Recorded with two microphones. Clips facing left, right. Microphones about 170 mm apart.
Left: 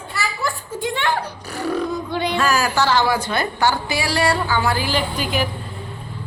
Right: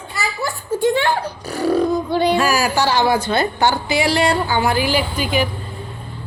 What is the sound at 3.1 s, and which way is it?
A woman's voice, 25° right (ahead or behind).